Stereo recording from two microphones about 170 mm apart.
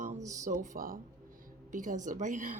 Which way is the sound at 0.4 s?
50° right (ahead or behind).